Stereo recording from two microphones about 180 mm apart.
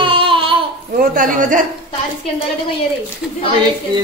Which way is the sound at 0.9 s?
55° right (ahead or behind).